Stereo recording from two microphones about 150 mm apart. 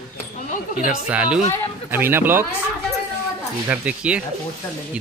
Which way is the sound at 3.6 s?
10° right (ahead or behind).